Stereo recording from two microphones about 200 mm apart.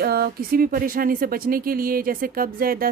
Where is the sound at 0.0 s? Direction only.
50° right (ahead or behind).